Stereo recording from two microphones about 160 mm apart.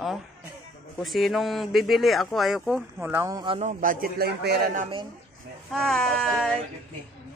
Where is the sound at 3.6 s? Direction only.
50° right (ahead or behind); by 4.7 s 90° right.